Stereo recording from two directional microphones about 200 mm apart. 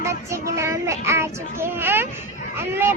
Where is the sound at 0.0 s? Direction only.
15° right (ahead or behind).